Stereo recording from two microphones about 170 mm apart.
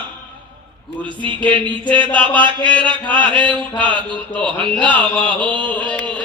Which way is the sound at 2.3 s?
30° right (ahead or behind).